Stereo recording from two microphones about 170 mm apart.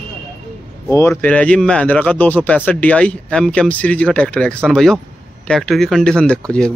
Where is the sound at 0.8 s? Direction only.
15° left (ahead or behind).